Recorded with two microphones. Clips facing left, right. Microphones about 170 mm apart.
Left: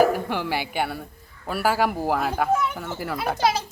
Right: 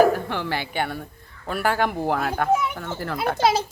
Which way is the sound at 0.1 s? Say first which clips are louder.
Even; 10° left (ahead or behind).